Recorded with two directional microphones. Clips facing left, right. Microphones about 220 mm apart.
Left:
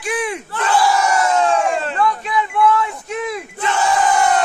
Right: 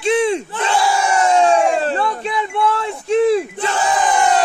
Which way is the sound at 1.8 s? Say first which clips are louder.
Right 1 dB; 35° right (ahead or behind).